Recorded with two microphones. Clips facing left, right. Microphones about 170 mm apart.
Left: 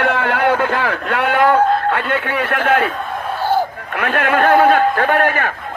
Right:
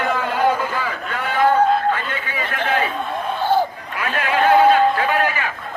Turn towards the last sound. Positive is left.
turn(degrees=55)  # may be behind; listen again after turning